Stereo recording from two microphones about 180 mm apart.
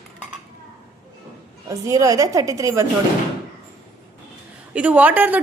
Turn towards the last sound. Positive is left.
turn(degrees=-10)  # may be behind; listen again after turning